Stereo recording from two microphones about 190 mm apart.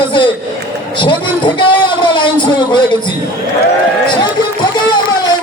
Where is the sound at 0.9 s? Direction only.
25° left (ahead or behind).